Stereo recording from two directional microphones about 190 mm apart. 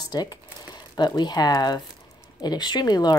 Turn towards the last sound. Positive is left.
turn(degrees=20)  # may be behind; listen again after turning